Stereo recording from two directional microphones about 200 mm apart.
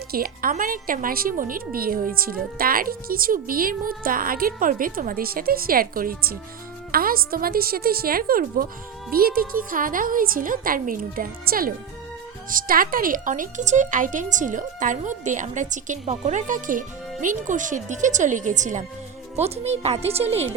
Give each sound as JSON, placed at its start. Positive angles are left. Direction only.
{"t": 0.1, "sound": "speech", "side_deg": -45}